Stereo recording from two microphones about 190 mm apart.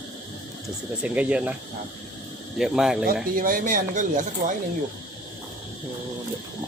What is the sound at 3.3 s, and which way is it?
Speech, 45° right (ahead or behind).